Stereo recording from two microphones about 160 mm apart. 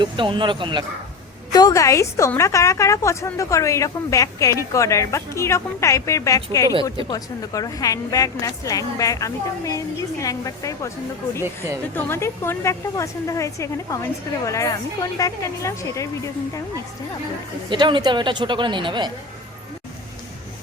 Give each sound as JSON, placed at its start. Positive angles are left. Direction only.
{"t": 0.0, "sound": "speech", "side_deg": -30}
{"t": 1.5, "sound": "a woman's voice", "side_deg": 20}
{"t": 11.9, "sound": "a woman's voice", "side_deg": 15}
{"t": 17.7, "sound": "speech", "side_deg": -30}